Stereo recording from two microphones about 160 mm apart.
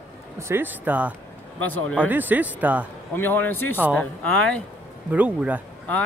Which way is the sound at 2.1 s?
10° right (ahead or behind).